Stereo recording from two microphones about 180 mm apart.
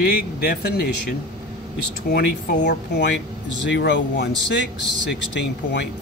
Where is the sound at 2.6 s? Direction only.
70° left (ahead or behind).